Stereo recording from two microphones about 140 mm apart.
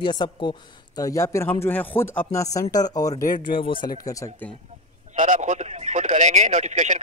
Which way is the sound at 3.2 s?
75° left (ahead or behind).